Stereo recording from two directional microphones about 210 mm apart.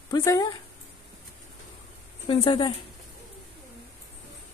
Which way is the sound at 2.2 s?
25° left (ahead or behind).